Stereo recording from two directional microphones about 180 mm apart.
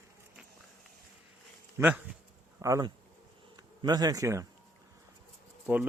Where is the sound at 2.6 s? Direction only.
20° right (ahead or behind).